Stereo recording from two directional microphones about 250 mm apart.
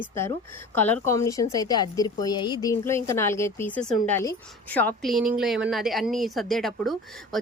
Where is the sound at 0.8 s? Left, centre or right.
Centre.